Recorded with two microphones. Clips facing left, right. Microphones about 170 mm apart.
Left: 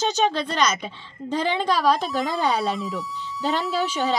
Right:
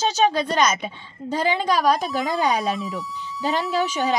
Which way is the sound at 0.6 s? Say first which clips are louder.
Right 2 dB; 10° right (ahead or behind).